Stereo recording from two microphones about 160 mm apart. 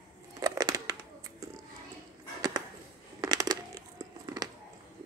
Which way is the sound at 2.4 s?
25° right (ahead or behind).